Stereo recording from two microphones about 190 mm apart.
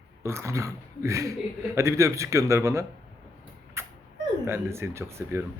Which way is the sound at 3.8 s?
15° right (ahead or behind).